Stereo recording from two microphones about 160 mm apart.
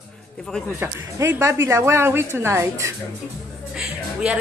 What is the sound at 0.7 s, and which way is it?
Speech, 15° right (ahead or behind).